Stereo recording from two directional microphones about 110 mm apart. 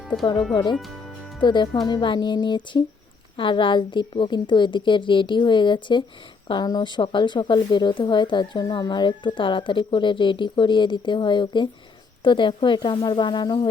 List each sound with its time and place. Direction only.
0.5 s speech: 45° left (ahead or behind)